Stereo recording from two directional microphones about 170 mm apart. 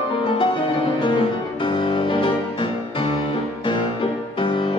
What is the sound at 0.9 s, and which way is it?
Music, 30° left (ahead or behind).